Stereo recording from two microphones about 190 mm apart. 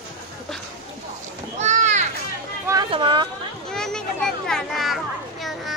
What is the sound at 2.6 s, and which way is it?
Speech, 20° right (ahead or behind).